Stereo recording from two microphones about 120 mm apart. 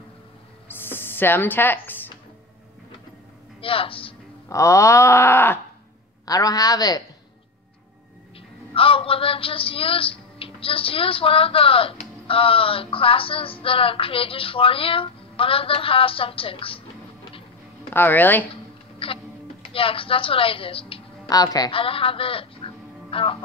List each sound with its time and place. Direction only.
0.7 s a sound: 20° left (ahead or behind)
3.6 s a woman's voice: 50° left (ahead or behind)
4.5 s groan: 25° left (ahead or behind)
6.2 s a man's voice: 30° left (ahead or behind)
8.7 s a woman's voice: 50° left (ahead or behind)
17.9 s speech: 15° left (ahead or behind)
19.0 s music: 50° left (ahead or behind)
19.7 s a woman's voice: 50° left (ahead or behind)
21.3 s a man's voice: 30° left (ahead or behind)
21.7 s speech: 50° left (ahead or behind)